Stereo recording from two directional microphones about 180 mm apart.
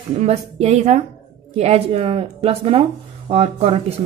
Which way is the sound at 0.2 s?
35° right (ahead or behind).